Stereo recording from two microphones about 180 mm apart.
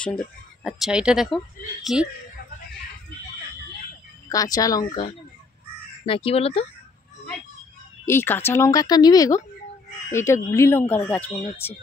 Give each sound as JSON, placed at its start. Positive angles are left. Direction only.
{"t": 0.0, "sound": "speech", "side_deg": 5}
{"t": 4.3, "sound": "speech", "side_deg": 20}
{"t": 8.0, "sound": "speech", "side_deg": 15}